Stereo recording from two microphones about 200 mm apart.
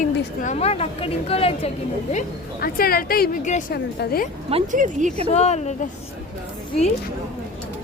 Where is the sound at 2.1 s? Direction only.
50° left (ahead or behind).